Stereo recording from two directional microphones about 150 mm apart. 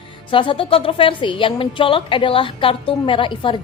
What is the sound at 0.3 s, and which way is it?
A woman's voice, 35° left (ahead or behind).